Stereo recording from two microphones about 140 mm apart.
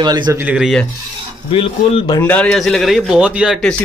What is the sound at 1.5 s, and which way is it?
Speech, 40° left (ahead or behind).